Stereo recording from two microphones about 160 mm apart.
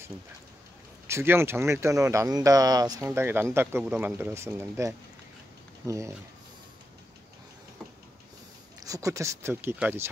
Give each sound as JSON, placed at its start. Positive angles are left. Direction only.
{"t": 1.0, "sound": "speech", "side_deg": -15}
{"t": 8.7, "sound": "speech", "side_deg": -20}